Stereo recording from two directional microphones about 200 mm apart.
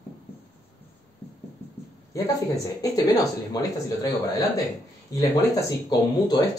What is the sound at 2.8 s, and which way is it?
Speech, 20° left (ahead or behind).